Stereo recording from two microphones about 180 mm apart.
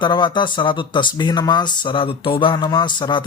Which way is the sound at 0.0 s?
25° left (ahead or behind).